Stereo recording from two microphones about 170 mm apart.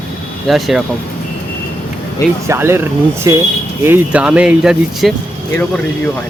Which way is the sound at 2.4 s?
15° right (ahead or behind).